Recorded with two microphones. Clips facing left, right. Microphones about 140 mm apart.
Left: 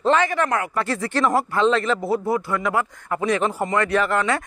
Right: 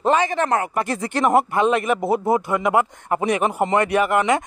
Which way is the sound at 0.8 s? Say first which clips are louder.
Even; 15° right (ahead or behind).